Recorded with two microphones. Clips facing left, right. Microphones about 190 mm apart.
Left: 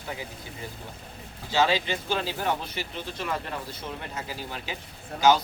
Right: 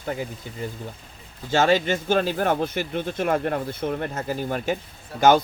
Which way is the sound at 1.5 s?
50° right (ahead or behind).